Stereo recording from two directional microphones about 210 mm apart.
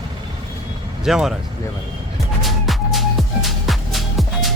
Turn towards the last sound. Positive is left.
turn(degrees=0)  # may be behind; listen again after turning